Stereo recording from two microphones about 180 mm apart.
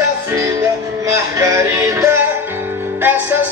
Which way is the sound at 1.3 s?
15° right (ahead or behind).